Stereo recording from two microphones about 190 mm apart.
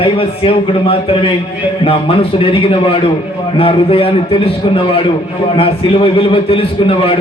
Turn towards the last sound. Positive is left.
turn(degrees=30)  # may be behind; listen again after turning